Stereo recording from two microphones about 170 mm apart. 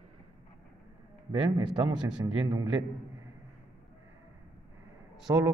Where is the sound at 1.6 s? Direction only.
5° right (ahead or behind).